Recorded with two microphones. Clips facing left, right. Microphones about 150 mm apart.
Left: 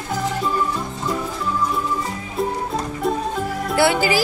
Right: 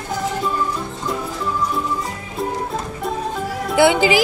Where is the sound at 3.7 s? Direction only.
20° right (ahead or behind).